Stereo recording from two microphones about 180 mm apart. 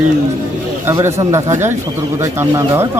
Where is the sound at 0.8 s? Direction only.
15° right (ahead or behind).